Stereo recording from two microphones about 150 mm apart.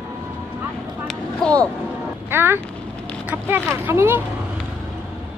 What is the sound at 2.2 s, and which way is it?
Speech, 15° right (ahead or behind).